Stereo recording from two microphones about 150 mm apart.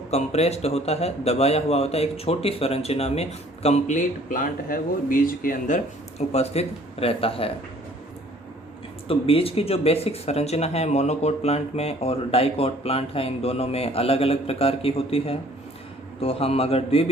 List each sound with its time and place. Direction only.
0.1 s a man's voice: 45° left (ahead or behind)
9.0 s speech: 40° left (ahead or behind)